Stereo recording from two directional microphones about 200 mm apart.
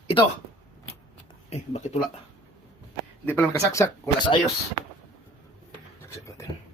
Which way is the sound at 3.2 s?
10° left (ahead or behind).